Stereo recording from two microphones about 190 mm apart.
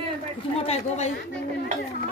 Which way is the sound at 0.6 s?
35° left (ahead or behind).